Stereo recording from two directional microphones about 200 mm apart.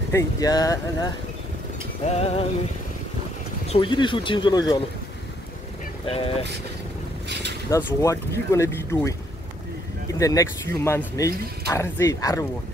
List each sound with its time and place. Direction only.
0.1 s speech: 20° left (ahead or behind)
2.0 s music: 30° left (ahead or behind)
3.6 s speech: 30° left (ahead or behind)
6.0 s speech: 30° left (ahead or behind)
7.2 s a sound: 60° right (ahead or behind)
7.7 s speech: 15° left (ahead or behind)
10.1 s speech: 15° left (ahead or behind)